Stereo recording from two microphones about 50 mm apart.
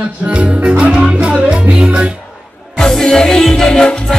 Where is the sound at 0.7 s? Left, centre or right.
Right.